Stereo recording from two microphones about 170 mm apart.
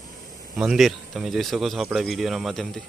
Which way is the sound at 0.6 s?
Centre (ahead or behind).